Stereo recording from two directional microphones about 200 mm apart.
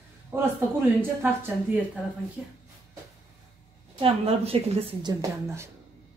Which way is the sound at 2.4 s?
5° right (ahead or behind).